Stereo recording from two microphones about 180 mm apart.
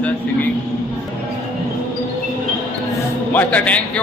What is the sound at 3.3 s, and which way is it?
Speech, 10° left (ahead or behind).